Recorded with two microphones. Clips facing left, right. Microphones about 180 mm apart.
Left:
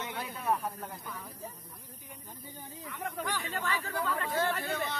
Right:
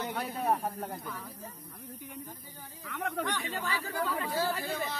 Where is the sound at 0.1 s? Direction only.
55° right (ahead or behind).